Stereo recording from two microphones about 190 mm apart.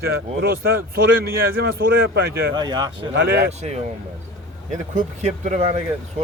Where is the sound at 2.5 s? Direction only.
20° right (ahead or behind).